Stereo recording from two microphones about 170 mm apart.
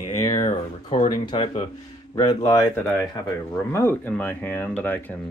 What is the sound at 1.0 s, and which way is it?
Speech, 25° left (ahead or behind).